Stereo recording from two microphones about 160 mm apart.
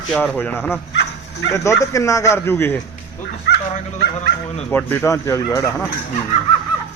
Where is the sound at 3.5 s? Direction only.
90° left.